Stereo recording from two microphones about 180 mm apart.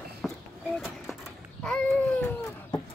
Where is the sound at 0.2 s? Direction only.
Centre (ahead or behind).